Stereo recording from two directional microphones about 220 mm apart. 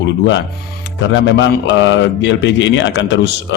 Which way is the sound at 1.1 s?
55° left (ahead or behind).